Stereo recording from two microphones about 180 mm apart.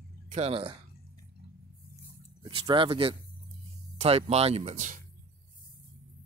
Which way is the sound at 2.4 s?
25° right (ahead or behind).